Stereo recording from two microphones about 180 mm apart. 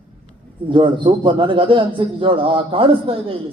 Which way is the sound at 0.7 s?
25° right (ahead or behind).